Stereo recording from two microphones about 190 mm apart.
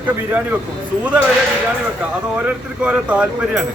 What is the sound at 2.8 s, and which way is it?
Speech, 5° right (ahead or behind).